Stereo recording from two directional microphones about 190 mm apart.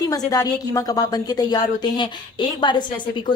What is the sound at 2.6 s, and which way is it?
Speech, 25° left (ahead or behind).